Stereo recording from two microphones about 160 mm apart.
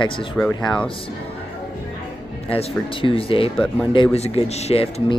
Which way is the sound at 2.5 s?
35° left (ahead or behind).